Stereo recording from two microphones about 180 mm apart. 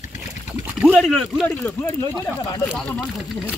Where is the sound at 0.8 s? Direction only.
Centre (ahead or behind).